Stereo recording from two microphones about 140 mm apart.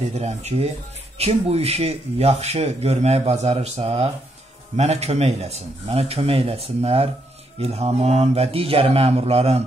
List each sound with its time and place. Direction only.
0.1 s speech: 50° right (ahead or behind)